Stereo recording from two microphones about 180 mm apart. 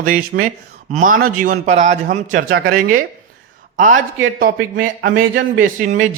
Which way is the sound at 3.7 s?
45° right (ahead or behind).